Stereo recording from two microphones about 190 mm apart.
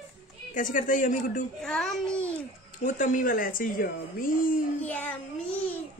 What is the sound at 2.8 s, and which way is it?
Speech, 45° left (ahead or behind).